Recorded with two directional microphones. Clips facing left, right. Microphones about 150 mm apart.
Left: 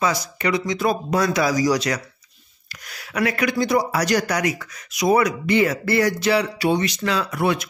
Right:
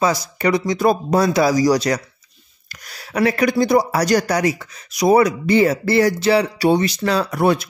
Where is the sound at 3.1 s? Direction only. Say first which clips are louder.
Right 5 dB; 30° right (ahead or behind).